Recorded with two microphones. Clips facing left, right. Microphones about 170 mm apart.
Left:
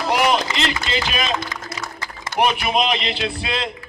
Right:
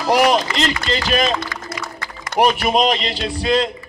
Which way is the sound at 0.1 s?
40° right (ahead or behind).